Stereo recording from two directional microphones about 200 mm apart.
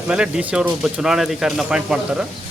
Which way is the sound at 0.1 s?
5° right (ahead or behind).